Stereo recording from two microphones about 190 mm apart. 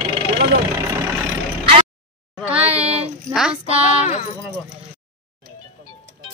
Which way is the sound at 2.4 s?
5° right (ahead or behind).